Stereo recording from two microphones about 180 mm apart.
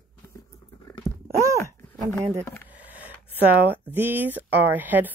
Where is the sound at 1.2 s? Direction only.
15° right (ahead or behind).